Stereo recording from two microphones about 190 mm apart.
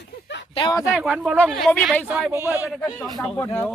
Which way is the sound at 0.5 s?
25° left (ahead or behind).